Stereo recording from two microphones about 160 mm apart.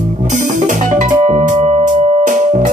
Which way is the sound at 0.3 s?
50° right (ahead or behind).